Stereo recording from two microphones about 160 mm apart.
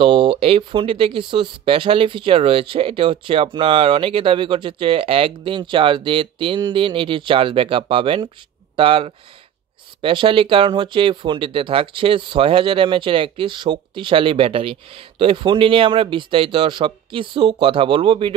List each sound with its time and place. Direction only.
0.0 s speech: 30° right (ahead or behind)